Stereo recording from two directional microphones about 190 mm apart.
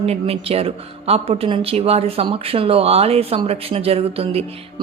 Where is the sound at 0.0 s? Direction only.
30° right (ahead or behind).